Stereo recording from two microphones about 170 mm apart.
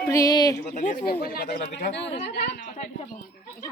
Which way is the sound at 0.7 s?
55° left (ahead or behind).